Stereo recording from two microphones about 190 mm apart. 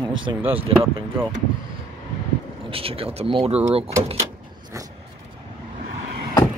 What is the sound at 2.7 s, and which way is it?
Speech, 30° right (ahead or behind).